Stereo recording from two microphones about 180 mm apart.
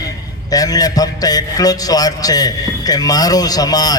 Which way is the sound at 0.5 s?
20° left (ahead or behind).